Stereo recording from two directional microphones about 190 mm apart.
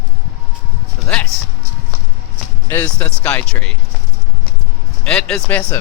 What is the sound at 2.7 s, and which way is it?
Speech, 10° left (ahead or behind).